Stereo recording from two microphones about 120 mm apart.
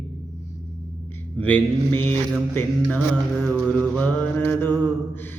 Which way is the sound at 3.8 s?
15° left (ahead or behind).